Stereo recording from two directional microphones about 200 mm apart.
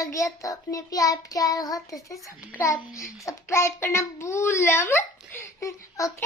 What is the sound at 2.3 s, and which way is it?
Speech, 5° right (ahead or behind).